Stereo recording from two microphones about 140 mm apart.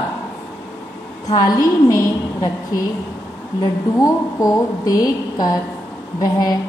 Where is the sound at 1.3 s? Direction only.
25° left (ahead or behind).